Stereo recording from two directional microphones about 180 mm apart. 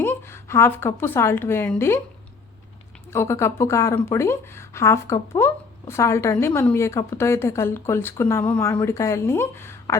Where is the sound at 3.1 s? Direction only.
15° left (ahead or behind).